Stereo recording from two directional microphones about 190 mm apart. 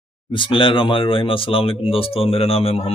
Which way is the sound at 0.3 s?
25° left (ahead or behind).